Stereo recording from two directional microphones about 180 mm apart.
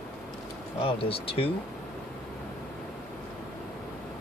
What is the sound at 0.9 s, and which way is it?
Speech, 30° left (ahead or behind).